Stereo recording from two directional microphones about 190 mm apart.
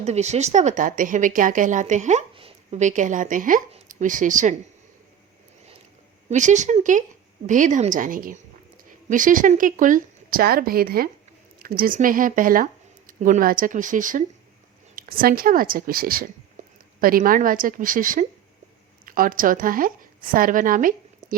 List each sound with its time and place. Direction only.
0.0 s speech: 35° right (ahead or behind)
6.2 s a woman's voice: 40° right (ahead or behind)
16.6 s a sound: 40° right (ahead or behind)
17.0 s a woman's voice: 50° right (ahead or behind)